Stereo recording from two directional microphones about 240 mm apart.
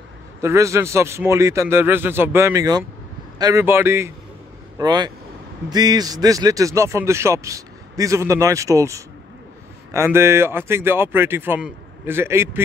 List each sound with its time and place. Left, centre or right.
0.4 s a man's voice: centre